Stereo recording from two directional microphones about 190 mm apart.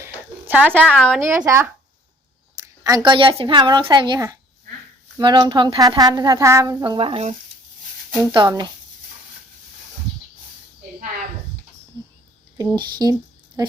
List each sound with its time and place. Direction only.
0.0 s a sound: 10° right (ahead or behind)
0.9 s a woman's voice: centre (ahead or behind)
1.2 s a woman's voice: 15° right (ahead or behind); by 7.3 s 35° right (ahead or behind)
8.1 s a woman's voice: 20° right (ahead or behind)
12.7 s a woman's voice: 20° right (ahead or behind)